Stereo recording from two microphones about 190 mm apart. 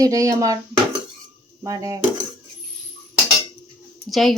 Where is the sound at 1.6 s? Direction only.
15° right (ahead or behind).